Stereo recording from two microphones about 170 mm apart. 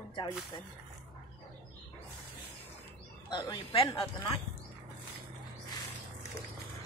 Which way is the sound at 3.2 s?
25° left (ahead or behind).